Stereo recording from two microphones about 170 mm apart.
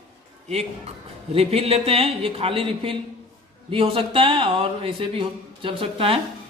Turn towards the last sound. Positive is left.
turn(degrees=-30)  # may be behind; listen again after turning